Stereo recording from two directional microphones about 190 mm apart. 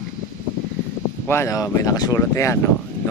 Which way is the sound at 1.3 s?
15° left (ahead or behind).